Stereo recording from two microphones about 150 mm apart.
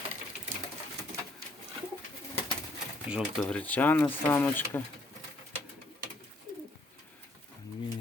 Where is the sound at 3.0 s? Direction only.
5° right (ahead or behind).